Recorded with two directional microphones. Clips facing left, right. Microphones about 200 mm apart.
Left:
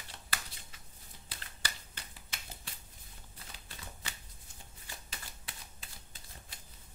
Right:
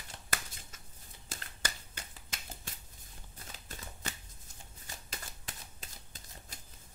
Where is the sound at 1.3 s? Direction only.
45° right (ahead or behind).